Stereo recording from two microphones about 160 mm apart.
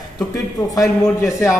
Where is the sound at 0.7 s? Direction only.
20° left (ahead or behind).